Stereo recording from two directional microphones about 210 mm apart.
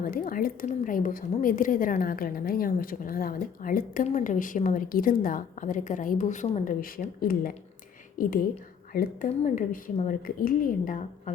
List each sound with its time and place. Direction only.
0.0 s a woman's voice: 45° left (ahead or behind)
8.9 s a woman's voice: 40° left (ahead or behind)